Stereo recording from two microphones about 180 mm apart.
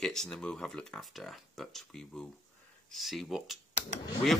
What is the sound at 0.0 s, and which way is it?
Speech, 5° left (ahead or behind).